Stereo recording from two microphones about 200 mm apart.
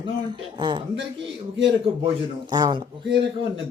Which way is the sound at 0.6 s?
25° right (ahead or behind).